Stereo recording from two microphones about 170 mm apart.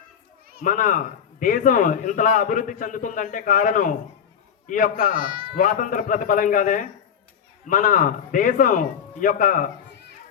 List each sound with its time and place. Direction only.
0.6 s a man's voice: 50° left (ahead or behind)
5.1 s a man's voice: 30° right (ahead or behind)
5.5 s a man's voice: 50° left (ahead or behind)